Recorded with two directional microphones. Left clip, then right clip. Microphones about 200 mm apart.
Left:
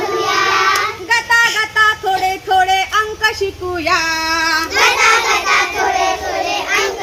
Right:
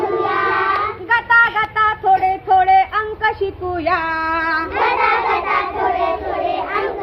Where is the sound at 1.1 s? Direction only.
60° left (ahead or behind); by 4.7 s 45° left (ahead or behind).